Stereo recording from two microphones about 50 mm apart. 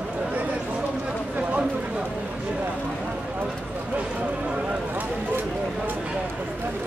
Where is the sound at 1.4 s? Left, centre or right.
Right.